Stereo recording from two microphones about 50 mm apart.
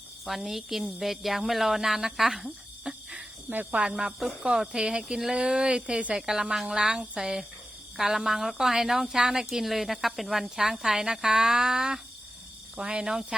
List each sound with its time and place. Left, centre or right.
0.3 s a woman's voice: centre
3.5 s speech: right
6.1 s a woman's voice: centre
7.2 s a woman's voice: centre